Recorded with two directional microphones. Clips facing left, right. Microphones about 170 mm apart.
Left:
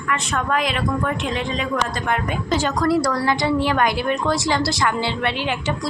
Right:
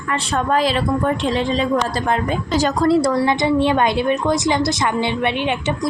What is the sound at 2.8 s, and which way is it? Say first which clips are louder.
Speech: right 5 dB; 25° right (ahead or behind).